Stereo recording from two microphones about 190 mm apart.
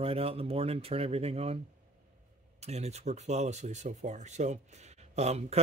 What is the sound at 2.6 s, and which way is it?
Speech, 35° right (ahead or behind).